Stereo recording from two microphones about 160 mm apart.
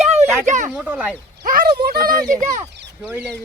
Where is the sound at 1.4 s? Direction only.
65° right (ahead or behind).